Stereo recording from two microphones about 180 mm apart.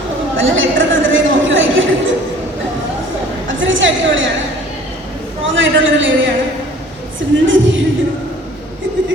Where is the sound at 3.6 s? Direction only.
90° right.